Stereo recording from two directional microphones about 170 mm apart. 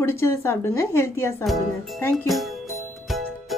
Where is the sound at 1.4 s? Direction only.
Centre (ahead or behind).